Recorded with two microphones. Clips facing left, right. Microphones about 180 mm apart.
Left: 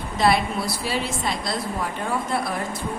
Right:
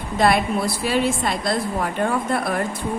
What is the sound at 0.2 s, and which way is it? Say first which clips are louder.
A woman's voice: right 2 dB; 50° right (ahead or behind).